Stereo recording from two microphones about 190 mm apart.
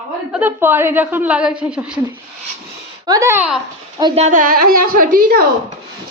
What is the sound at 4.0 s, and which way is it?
Speech, 25° right (ahead or behind).